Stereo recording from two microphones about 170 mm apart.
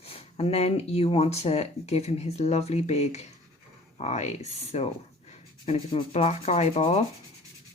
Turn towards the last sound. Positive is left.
turn(degrees=40)  # may be behind; listen again after turning